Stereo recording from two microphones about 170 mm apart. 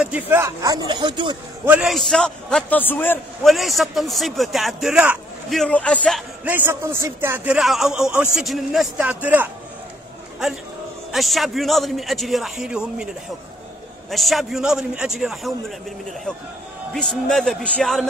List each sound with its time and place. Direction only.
0.0 s speech: 10° right (ahead or behind); by 1.4 s 25° right (ahead or behind)
1.7 s a man's voice: 5° right (ahead or behind); by 3.2 s 10° left (ahead or behind)
3.4 s a man's voice: centre (ahead or behind)
5.6 s a man's voice: 5° left (ahead or behind)
6.4 s a man's voice: 10° right (ahead or behind)
11.1 s a man's voice: centre (ahead or behind)
14.1 s a man's voice: centre (ahead or behind)
16.9 s a man's voice: 5° left (ahead or behind)